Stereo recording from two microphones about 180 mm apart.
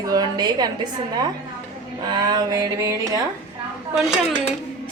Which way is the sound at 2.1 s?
20° right (ahead or behind).